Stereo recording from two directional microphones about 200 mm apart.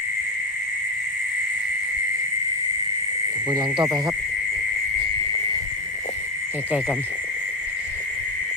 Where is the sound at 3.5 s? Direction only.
20° right (ahead or behind).